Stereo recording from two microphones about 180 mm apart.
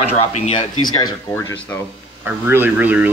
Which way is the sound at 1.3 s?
10° left (ahead or behind).